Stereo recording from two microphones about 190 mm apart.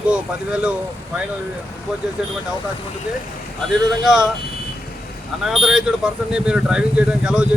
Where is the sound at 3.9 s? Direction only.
Centre (ahead or behind).